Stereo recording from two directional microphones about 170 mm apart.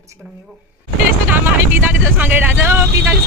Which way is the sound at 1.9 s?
10° right (ahead or behind).